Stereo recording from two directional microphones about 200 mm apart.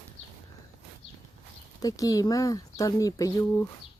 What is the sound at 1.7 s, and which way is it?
Speech, 15° left (ahead or behind).